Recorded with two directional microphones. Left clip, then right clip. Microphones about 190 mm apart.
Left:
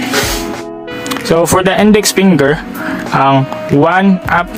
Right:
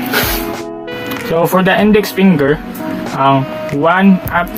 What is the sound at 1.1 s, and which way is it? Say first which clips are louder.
Speech: left 2 dB; 45° left (ahead or behind).